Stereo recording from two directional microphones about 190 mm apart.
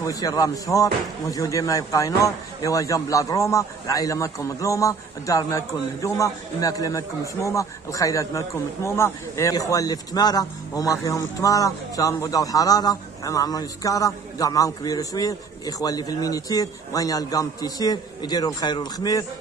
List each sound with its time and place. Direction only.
0.0 s a man's voice: 15° left (ahead or behind)